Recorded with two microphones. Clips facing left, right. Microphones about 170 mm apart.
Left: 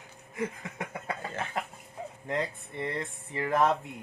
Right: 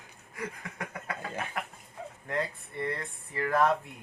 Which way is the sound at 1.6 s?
25° left (ahead or behind).